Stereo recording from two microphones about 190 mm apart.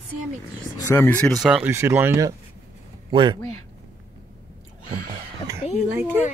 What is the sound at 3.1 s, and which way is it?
Speech, 25° right (ahead or behind).